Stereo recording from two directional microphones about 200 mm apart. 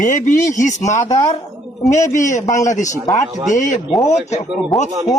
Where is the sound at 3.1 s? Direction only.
15° left (ahead or behind).